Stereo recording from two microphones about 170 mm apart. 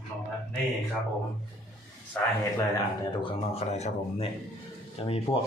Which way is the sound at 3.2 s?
35° left (ahead or behind).